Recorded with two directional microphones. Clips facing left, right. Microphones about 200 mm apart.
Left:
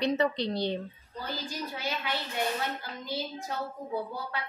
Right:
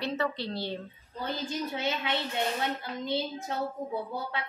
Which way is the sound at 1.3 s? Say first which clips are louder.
Right 4 dB; 25° right (ahead or behind).